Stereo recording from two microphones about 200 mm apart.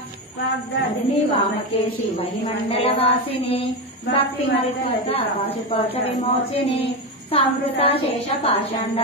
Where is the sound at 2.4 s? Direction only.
30° left (ahead or behind).